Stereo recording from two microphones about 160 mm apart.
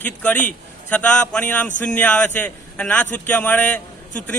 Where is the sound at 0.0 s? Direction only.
10° left (ahead or behind).